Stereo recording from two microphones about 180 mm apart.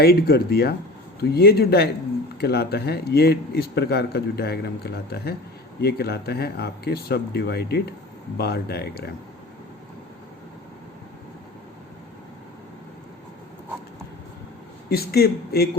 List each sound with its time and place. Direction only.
0.0 s speech: 60° left (ahead or behind)
14.8 s speech: 60° left (ahead or behind)